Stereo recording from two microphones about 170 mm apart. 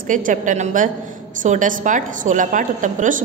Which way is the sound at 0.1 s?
50° right (ahead or behind).